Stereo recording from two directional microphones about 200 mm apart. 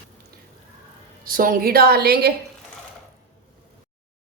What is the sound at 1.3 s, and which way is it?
A woman's voice, 45° right (ahead or behind).